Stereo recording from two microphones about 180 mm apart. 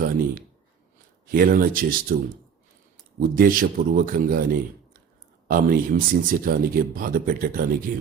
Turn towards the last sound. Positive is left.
turn(degrees=-55)  # may be behind; listen again after turning